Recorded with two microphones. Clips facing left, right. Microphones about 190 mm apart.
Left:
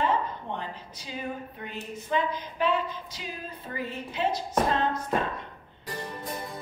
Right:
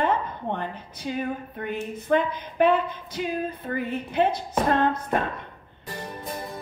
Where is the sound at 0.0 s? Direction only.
55° right (ahead or behind).